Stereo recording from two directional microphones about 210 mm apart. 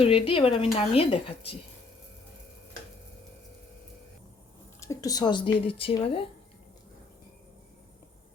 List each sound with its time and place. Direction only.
0.0 s speech: 25° left (ahead or behind)
4.8 s speech: 15° left (ahead or behind)